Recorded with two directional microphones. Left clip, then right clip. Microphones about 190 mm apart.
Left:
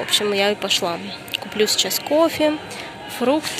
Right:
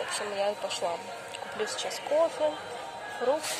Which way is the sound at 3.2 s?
45° left (ahead or behind).